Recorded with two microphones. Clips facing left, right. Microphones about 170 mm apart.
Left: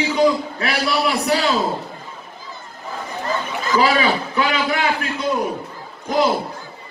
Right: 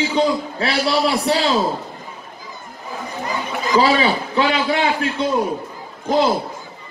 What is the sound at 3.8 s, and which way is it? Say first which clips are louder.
A man's voice: even; 30° right (ahead or behind).